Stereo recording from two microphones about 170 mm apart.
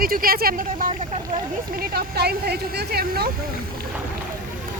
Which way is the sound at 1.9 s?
70° right (ahead or behind).